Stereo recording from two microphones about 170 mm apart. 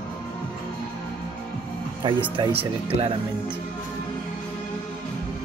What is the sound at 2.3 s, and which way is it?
Speech, 30° right (ahead or behind).